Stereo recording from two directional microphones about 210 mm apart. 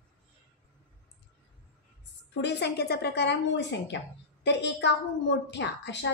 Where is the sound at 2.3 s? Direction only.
55° left (ahead or behind).